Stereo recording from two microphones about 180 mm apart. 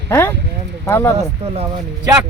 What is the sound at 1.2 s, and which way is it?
Speech, 35° right (ahead or behind).